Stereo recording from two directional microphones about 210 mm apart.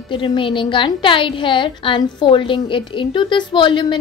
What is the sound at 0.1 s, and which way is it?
A woman's voice, 25° left (ahead or behind).